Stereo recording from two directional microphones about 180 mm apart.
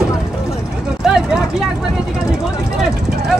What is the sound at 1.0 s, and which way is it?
Vehicle, 5° right (ahead or behind).